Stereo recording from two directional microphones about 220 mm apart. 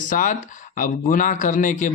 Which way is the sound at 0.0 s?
35° left (ahead or behind).